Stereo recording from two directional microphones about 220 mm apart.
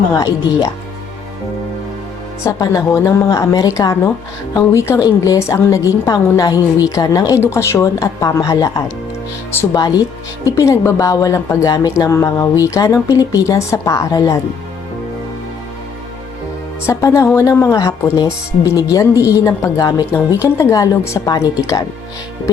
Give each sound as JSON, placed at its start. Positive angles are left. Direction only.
{"t": 0.1, "sound": "speech", "side_deg": 15}
{"t": 2.4, "sound": "speech", "side_deg": 15}
{"t": 16.8, "sound": "speech", "side_deg": 15}